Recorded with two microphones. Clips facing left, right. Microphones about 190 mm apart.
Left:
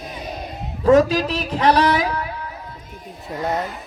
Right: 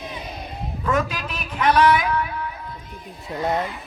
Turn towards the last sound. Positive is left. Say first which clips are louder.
# even
turn(degrees=0)  # may be behind; listen again after turning